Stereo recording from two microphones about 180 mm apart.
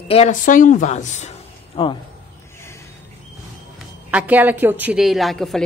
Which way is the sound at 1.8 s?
30° left (ahead or behind).